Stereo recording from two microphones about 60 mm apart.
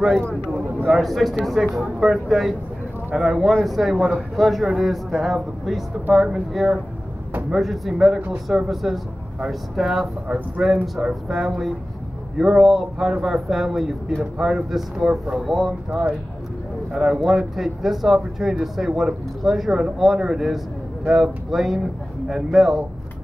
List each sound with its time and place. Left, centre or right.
0.8 s speech: centre
15.0 s speech: centre
15.4 s speech: centre